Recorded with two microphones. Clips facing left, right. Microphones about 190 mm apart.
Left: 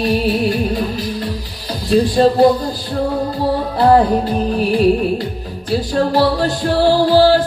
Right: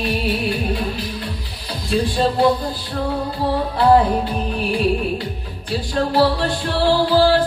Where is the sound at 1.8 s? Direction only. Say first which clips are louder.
Left 7 dB; 40° left (ahead or behind).